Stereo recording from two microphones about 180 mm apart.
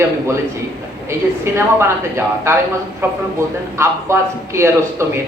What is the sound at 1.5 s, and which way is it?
A man's voice, 15° right (ahead or behind).